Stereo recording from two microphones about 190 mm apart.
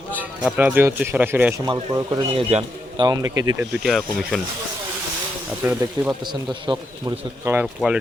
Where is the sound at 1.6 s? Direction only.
20° right (ahead or behind).